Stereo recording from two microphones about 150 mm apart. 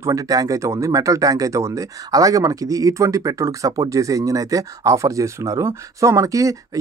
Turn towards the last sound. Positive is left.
turn(degrees=-20)  # may be behind; listen again after turning